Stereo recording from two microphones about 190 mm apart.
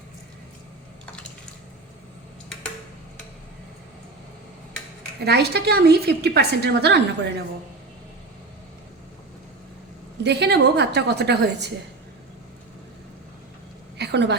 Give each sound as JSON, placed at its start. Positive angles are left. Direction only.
{"t": 5.2, "sound": "a woman's voice", "side_deg": -60}
{"t": 10.2, "sound": "a woman's voice", "side_deg": -60}
{"t": 14.0, "sound": "a sound", "side_deg": -65}